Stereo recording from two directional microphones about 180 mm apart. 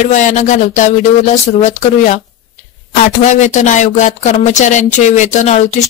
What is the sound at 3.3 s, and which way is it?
Speech, 40° left (ahead or behind).